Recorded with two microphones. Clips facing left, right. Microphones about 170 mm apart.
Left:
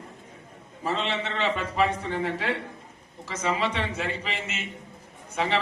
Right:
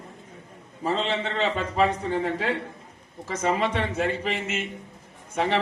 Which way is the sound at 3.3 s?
50° right (ahead or behind).